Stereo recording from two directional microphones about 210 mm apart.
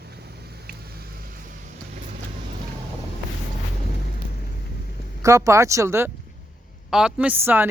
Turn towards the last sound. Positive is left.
turn(degrees=-10)  # may be behind; listen again after turning